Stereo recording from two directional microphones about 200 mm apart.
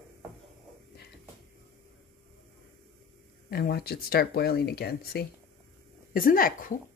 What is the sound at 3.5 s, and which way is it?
Speech, 50° left (ahead or behind).